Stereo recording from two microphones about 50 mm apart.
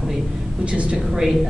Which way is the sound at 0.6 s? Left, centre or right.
Right.